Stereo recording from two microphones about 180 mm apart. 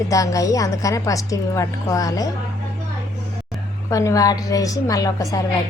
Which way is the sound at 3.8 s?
15° left (ahead or behind).